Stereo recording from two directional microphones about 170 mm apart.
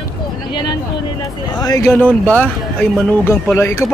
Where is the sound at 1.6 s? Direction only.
20° left (ahead or behind).